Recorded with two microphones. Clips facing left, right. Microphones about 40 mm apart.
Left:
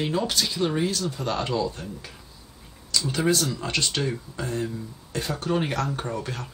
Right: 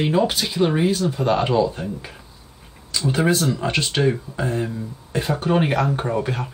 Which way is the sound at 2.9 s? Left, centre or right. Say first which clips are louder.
Right 4 dB; right.